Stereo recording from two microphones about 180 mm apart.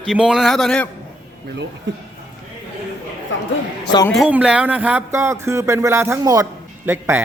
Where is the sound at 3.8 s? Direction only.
25° left (ahead or behind).